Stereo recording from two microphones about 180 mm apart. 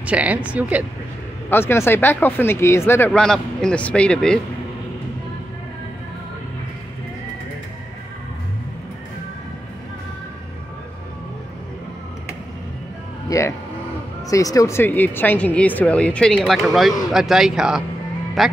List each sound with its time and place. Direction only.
0.0 s speech: 10° right (ahead or behind)
1.5 s speech: 15° left (ahead or behind)
3.1 s speech: 5° left (ahead or behind)
13.3 s speech: 15° left (ahead or behind); by 18.5 s centre (ahead or behind)